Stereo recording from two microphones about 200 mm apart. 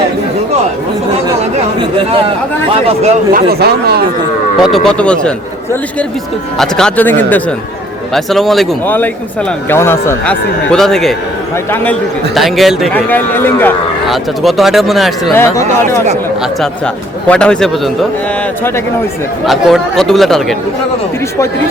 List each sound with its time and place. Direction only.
3.0 s speech: 50° right (ahead or behind)
4.6 s a man's voice: centre (ahead or behind)
6.6 s a man's voice: 5° left (ahead or behind)
14.1 s a man's voice: centre (ahead or behind)
15.4 s a man's voice: 15° left (ahead or behind)
16.4 s a man's voice: 5° left (ahead or behind)
19.5 s a man's voice: centre (ahead or behind)